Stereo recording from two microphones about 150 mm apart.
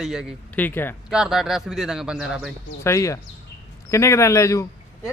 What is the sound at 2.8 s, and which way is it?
Speech, 20° left (ahead or behind).